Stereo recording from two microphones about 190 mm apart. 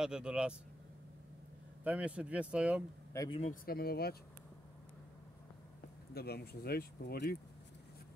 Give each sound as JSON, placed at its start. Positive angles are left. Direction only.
{"t": 0.0, "sound": "speech", "side_deg": -5}
{"t": 1.9, "sound": "speech", "side_deg": -5}
{"t": 3.1, "sound": "speech", "side_deg": 20}
{"t": 3.6, "sound": "speech", "side_deg": 55}
{"t": 6.1, "sound": "speech", "side_deg": 55}